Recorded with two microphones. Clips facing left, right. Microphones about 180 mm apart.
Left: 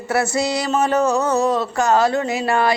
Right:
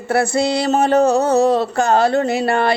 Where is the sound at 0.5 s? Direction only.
30° right (ahead or behind).